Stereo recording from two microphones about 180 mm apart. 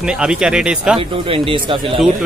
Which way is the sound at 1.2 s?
30° right (ahead or behind).